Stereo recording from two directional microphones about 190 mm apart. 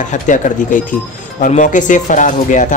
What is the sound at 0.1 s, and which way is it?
Speech, 45° left (ahead or behind).